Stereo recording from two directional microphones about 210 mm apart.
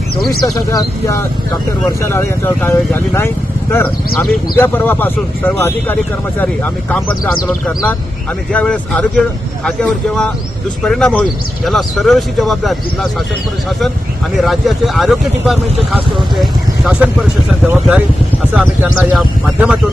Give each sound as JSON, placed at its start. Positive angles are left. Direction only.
{"t": 0.4, "sound": "speech", "side_deg": 15}
{"t": 8.5, "sound": "speech", "side_deg": 5}